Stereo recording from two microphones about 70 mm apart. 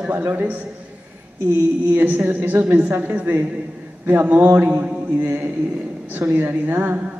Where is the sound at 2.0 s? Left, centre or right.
Right.